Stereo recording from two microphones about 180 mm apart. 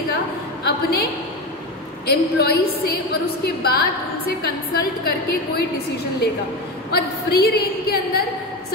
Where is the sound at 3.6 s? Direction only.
60° left (ahead or behind).